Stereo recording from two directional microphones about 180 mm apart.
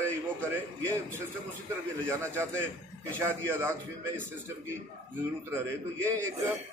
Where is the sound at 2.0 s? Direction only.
15° right (ahead or behind).